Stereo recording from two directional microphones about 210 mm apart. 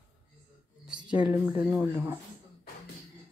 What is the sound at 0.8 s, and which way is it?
Speech, 5° right (ahead or behind).